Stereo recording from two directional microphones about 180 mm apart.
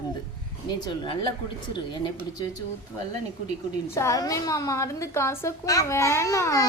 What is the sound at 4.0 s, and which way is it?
Speech, 20° left (ahead or behind).